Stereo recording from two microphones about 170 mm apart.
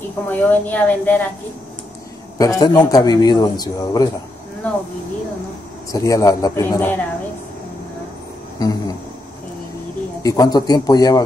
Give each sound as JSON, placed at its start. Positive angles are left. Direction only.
{"t": 0.3, "sound": "speech", "side_deg": 10}
{"t": 2.3, "sound": "speech", "side_deg": 20}
{"t": 5.9, "sound": "speech", "side_deg": 20}
{"t": 8.5, "sound": "speech", "side_deg": 20}
{"t": 10.2, "sound": "speech", "side_deg": 20}